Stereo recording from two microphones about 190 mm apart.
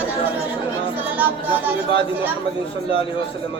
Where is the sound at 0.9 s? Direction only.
10° right (ahead or behind).